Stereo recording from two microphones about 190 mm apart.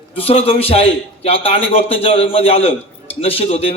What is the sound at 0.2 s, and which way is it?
A man's voice, 30° left (ahead or behind).